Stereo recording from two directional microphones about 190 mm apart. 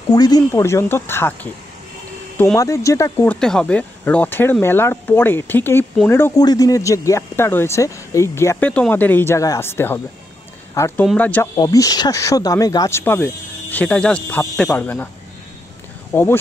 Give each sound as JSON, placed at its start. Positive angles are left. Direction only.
{"t": 0.1, "sound": "speech", "side_deg": 20}
{"t": 3.3, "sound": "speech", "side_deg": 5}
{"t": 11.5, "sound": "speech", "side_deg": 20}
{"t": 16.1, "sound": "speech", "side_deg": 10}